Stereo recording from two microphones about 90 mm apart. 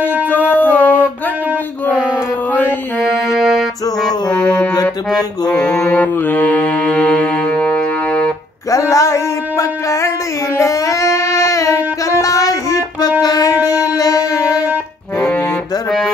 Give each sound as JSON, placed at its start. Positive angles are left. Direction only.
{"t": 0.3, "sound": "a sound", "side_deg": 20}
{"t": 3.3, "sound": "music", "side_deg": -5}
{"t": 4.3, "sound": "music", "side_deg": 15}
{"t": 5.9, "sound": "music", "side_deg": 20}
{"t": 8.6, "sound": "a sound", "side_deg": 40}
{"t": 13.2, "sound": "music", "side_deg": 45}